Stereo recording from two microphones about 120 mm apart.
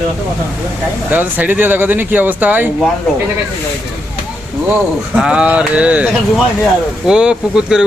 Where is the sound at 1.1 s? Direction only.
15° right (ahead or behind).